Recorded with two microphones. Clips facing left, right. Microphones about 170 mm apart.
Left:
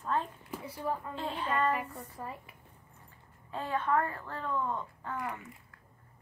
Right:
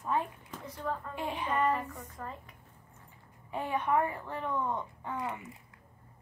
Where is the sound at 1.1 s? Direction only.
15° right (ahead or behind).